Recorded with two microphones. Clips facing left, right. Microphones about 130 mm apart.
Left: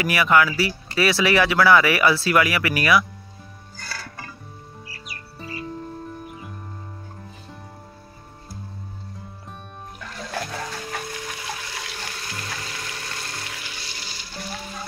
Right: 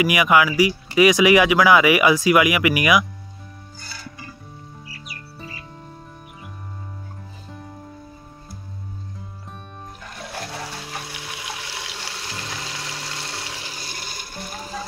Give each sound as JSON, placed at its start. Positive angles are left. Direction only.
{"t": 0.0, "sound": "speech", "side_deg": -15}
{"t": 3.7, "sound": "music", "side_deg": 75}
{"t": 11.3, "sound": "toilet flush", "side_deg": -20}
{"t": 12.7, "sound": "a sound", "side_deg": -10}
{"t": 13.5, "sound": "water", "side_deg": -30}
{"t": 13.7, "sound": "water", "side_deg": -45}